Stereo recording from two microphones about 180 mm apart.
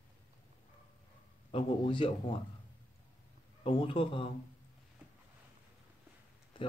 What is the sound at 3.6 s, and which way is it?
Speech, 30° left (ahead or behind).